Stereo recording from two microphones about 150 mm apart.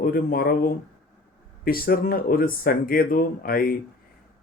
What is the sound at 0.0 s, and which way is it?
Speech, 70° left (ahead or behind).